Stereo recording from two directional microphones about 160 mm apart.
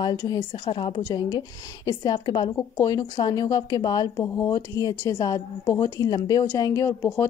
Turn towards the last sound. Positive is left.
turn(degrees=15)  # may be behind; listen again after turning